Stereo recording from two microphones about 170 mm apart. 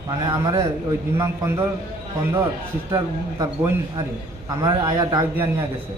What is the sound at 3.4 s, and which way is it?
A man's voice, 20° right (ahead or behind).